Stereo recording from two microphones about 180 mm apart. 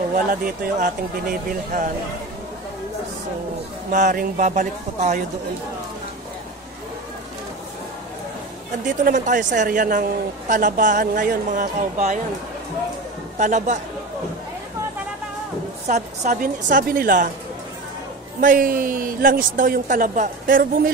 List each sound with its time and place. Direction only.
0.1 s a woman's voice: 50° right (ahead or behind)
3.9 s a woman's voice: 45° right (ahead or behind)
8.8 s a woman's voice: 45° right (ahead or behind)
13.4 s a woman's voice: 45° right (ahead or behind)
15.9 s a woman's voice: 45° right (ahead or behind)
18.4 s a woman's voice: 50° right (ahead or behind)